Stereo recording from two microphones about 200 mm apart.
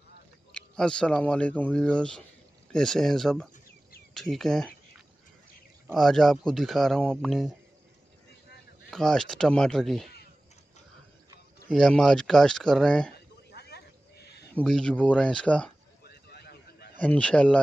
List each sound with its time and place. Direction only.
0.5 s speech: 5° left (ahead or behind)
5.9 s speech: centre (ahead or behind)
8.9 s speech: centre (ahead or behind)
11.7 s speech: centre (ahead or behind)
13.5 s a sound: 55° left (ahead or behind)
14.5 s speech: 5° left (ahead or behind)
16.0 s a sound: 50° left (ahead or behind)
17.0 s speech: 5° left (ahead or behind)